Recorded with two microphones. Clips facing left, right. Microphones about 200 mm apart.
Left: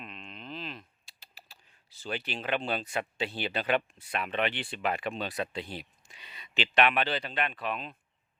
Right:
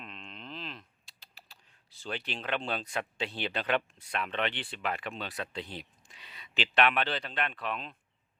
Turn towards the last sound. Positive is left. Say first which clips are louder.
# left 2 dB
turn(degrees=5)  # may be behind; listen again after turning